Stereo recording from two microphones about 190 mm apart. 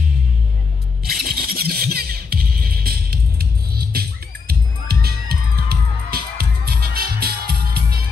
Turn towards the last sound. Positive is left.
turn(degrees=-55)  # may be behind; listen again after turning